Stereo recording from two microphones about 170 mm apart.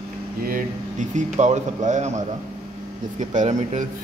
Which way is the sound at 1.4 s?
45° right (ahead or behind).